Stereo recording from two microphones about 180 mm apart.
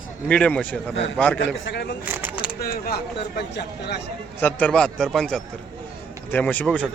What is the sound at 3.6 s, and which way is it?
Speech, 70° left (ahead or behind).